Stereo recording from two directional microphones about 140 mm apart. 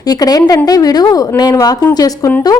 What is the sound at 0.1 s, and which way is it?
Speech, 25° left (ahead or behind).